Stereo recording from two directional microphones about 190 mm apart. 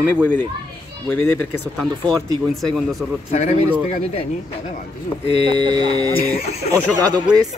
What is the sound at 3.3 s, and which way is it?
Speech, 35° left (ahead or behind).